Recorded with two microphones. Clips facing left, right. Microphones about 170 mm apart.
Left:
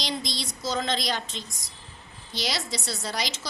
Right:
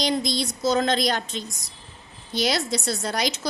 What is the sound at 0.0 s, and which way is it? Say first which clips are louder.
A woman's voice: right 8 dB; 55° right (ahead or behind).